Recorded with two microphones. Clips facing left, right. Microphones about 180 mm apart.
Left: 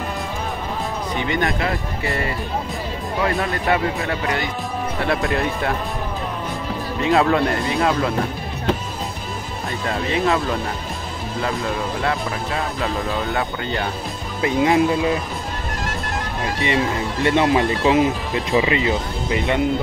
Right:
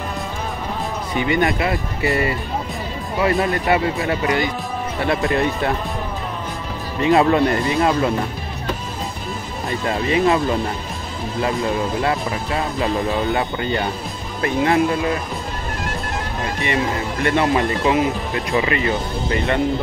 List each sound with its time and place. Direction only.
1.3 s speech: 5° right (ahead or behind)
3.2 s speech: 5° right (ahead or behind)
7.0 s speech: centre (ahead or behind)
9.8 s speech: 5° right (ahead or behind)
12.8 s speech: 5° right (ahead or behind)
14.4 s speech: 15° left (ahead or behind)
16.6 s speech: 20° left (ahead or behind)